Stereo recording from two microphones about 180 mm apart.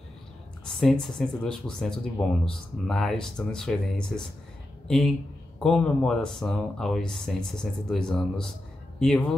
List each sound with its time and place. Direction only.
0.7 s speech: centre (ahead or behind)